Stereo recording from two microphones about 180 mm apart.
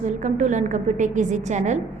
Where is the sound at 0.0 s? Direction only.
40° right (ahead or behind).